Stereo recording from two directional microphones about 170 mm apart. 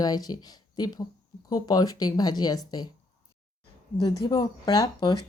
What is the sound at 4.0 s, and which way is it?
Speech, 25° left (ahead or behind).